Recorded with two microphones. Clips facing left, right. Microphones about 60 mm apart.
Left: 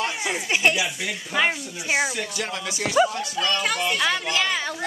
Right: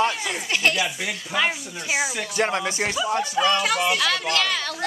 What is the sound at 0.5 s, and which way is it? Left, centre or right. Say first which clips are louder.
A child's voice: even; centre.